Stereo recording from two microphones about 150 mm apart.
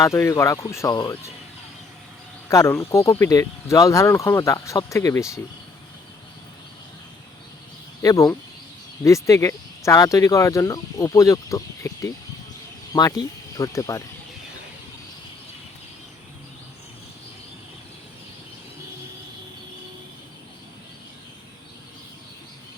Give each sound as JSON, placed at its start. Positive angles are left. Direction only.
{"t": 0.0, "sound": "speech", "side_deg": 20}
{"t": 2.5, "sound": "speech", "side_deg": 20}
{"t": 8.0, "sound": "speech", "side_deg": 20}